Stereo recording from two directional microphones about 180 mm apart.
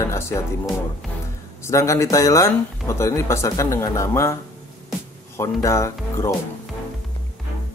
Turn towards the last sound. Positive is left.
turn(degrees=15)  # may be behind; listen again after turning